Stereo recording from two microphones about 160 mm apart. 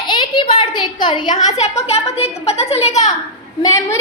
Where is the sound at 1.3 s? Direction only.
45° left (ahead or behind).